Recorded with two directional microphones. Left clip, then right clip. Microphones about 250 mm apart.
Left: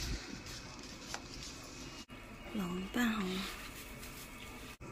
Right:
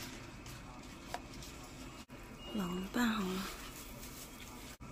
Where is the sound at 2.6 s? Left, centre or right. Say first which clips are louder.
Even; centre.